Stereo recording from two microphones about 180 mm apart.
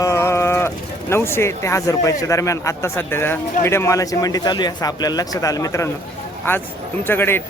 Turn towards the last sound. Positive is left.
turn(degrees=10)  # may be behind; listen again after turning